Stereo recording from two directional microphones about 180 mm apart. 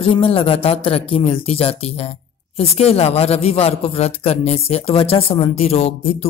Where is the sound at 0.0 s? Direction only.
30° left (ahead or behind).